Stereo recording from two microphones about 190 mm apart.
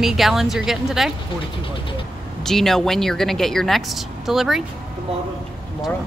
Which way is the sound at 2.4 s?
Centre (ahead or behind).